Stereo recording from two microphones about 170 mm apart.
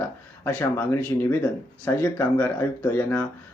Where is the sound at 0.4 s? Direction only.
10° left (ahead or behind).